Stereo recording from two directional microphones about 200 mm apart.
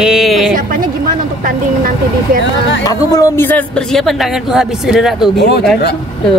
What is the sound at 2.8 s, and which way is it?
Speech, 20° left (ahead or behind).